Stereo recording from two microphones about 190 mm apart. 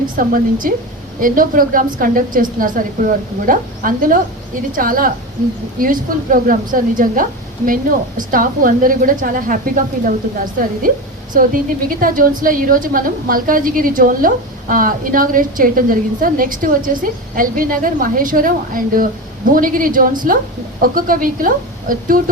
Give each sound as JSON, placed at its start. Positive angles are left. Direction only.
{"t": 0.2, "sound": "a woman's voice", "side_deg": -45}